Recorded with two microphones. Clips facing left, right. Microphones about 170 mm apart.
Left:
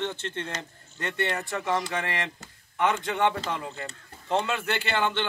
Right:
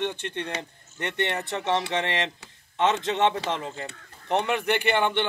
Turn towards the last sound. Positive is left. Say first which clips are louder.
# right 4 dB
turn(degrees=-15)  # may be behind; listen again after turning